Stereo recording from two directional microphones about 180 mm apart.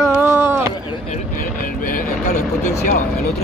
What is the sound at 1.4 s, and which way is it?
Speech, 50° left (ahead or behind).